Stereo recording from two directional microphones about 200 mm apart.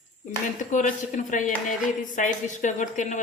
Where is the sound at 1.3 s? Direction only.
40° left (ahead or behind).